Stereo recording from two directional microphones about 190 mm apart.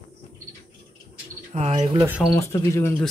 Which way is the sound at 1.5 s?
35° right (ahead or behind).